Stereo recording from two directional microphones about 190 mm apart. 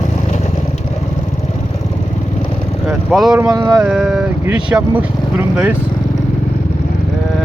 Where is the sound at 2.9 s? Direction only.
Centre (ahead or behind).